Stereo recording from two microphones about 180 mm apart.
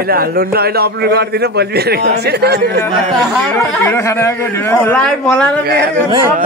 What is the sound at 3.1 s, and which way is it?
Speech, 10° left (ahead or behind).